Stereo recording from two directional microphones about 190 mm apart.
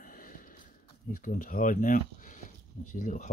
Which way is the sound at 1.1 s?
50° left (ahead or behind).